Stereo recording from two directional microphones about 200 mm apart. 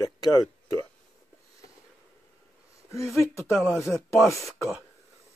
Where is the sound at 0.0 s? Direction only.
15° left (ahead or behind).